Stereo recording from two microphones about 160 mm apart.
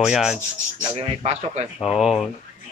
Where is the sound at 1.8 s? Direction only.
Centre (ahead or behind).